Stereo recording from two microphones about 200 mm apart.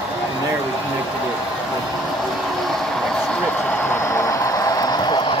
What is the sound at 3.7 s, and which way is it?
Vehicle, 10° left (ahead or behind).